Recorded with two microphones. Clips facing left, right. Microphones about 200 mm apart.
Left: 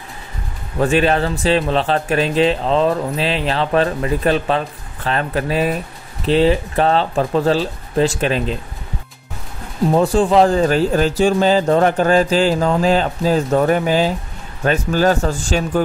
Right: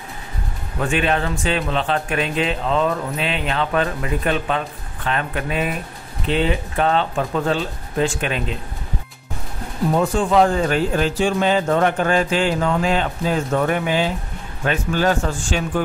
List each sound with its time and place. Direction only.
0.7 s speech: 35° left (ahead or behind)
9.9 s speech: 30° left (ahead or behind)